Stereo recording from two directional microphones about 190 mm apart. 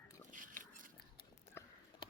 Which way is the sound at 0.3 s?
45° right (ahead or behind).